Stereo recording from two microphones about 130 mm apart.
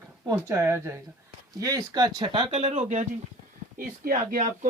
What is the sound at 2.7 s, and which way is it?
Speech, 65° right (ahead or behind).